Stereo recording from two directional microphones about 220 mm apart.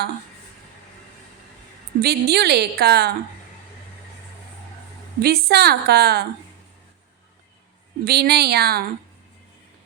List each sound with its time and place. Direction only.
2.0 s a woman's voice: 45° right (ahead or behind)
5.2 s a woman's voice: 45° right (ahead or behind)
8.0 s a woman's voice: 45° right (ahead or behind)